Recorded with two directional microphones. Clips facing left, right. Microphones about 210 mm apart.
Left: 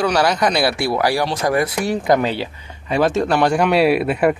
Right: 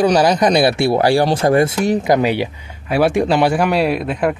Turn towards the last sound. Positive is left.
turn(degrees=5)  # may be behind; listen again after turning